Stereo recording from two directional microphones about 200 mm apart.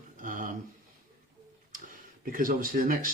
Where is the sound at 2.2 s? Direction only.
45° right (ahead or behind).